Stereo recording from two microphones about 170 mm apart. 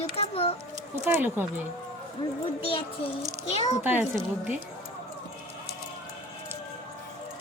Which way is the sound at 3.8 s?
10° right (ahead or behind).